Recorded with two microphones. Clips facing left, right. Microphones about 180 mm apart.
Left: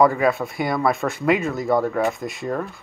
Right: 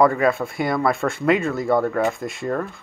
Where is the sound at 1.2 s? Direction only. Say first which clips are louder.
Right 1 dB; 25° left (ahead or behind).